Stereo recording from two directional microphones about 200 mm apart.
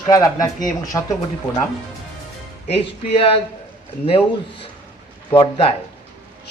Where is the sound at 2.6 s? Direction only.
30° left (ahead or behind).